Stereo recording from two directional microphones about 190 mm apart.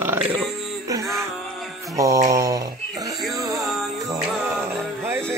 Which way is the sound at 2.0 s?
15° right (ahead or behind).